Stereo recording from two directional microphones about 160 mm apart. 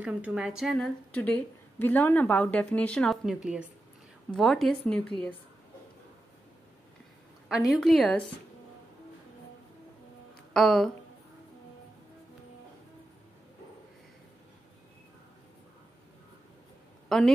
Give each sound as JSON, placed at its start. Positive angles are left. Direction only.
{"t": 0.0, "sound": "a woman's voice", "side_deg": -10}
{"t": 7.7, "sound": "a woman's voice", "side_deg": 0}
{"t": 10.5, "sound": "speech", "side_deg": 0}
{"t": 17.1, "sound": "a woman's voice", "side_deg": 0}